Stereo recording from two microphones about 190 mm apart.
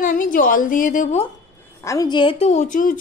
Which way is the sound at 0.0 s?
45° left (ahead or behind).